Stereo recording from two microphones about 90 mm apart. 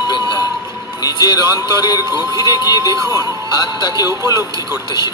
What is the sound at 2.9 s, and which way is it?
Speech, 40° right (ahead or behind).